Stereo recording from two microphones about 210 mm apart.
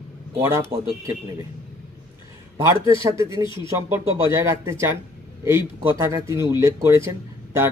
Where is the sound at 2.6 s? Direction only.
15° right (ahead or behind).